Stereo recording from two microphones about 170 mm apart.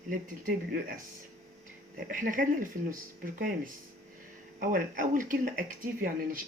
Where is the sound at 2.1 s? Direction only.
50° right (ahead or behind).